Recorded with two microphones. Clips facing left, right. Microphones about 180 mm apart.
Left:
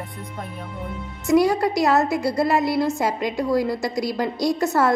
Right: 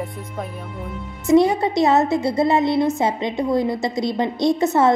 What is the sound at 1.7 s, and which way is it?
A woman's voice, 25° right (ahead or behind).